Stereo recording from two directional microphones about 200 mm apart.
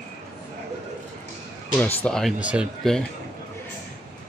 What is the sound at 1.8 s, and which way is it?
Speech, 5° left (ahead or behind).